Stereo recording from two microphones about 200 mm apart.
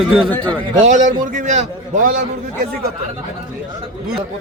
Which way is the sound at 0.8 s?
40° right (ahead or behind).